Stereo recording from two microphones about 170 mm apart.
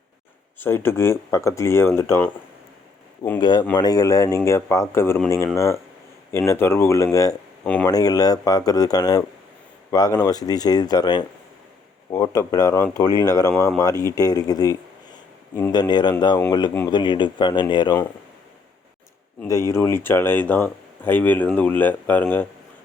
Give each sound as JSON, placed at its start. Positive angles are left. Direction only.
{"t": 0.6, "sound": "speech", "side_deg": 15}
{"t": 3.4, "sound": "speech", "side_deg": 25}
{"t": 7.6, "sound": "speech", "side_deg": 5}
{"t": 7.9, "sound": "speech", "side_deg": 20}
{"t": 19.4, "sound": "speech", "side_deg": 15}